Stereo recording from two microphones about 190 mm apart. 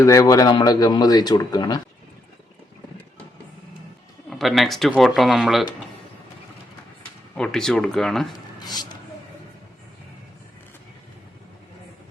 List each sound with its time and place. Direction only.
0.0 s speech: 15° left (ahead or behind)
4.3 s speech: centre (ahead or behind)
7.3 s speech: 5° left (ahead or behind)
8.5 s a sound: 20° left (ahead or behind)